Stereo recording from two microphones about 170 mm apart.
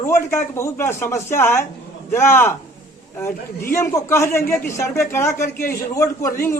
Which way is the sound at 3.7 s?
15° left (ahead or behind).